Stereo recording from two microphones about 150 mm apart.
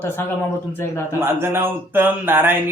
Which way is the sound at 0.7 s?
15° left (ahead or behind).